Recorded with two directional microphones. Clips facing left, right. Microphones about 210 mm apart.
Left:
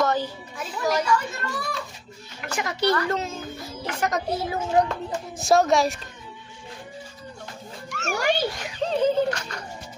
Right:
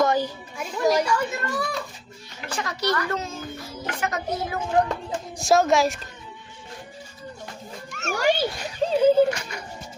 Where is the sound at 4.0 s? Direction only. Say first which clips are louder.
Left 2 dB; 40° left (ahead or behind).